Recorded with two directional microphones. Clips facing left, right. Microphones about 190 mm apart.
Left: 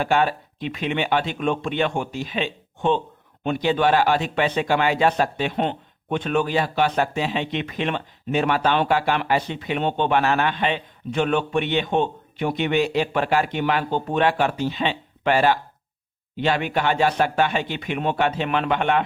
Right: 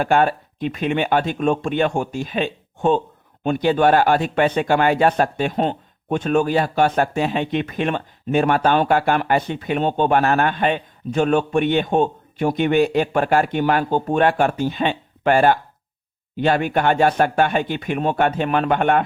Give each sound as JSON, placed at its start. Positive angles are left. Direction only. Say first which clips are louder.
{"t": 0.0, "sound": "speech", "louder": "right 3 dB", "side_deg": -50}